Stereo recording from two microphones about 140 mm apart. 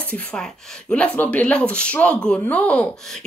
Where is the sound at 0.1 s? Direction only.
5° left (ahead or behind).